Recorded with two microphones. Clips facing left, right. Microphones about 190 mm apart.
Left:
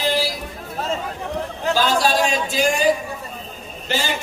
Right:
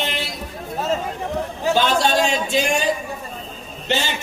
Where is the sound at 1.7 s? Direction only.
25° right (ahead or behind).